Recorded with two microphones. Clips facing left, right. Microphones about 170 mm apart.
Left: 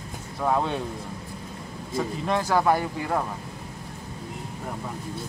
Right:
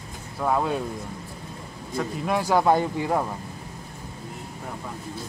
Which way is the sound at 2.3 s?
10° right (ahead or behind).